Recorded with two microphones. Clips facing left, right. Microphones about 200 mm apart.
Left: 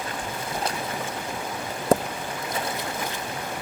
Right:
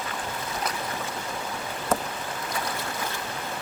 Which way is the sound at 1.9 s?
35° left (ahead or behind).